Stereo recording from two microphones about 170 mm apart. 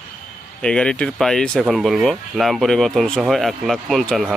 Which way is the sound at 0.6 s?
5° left (ahead or behind).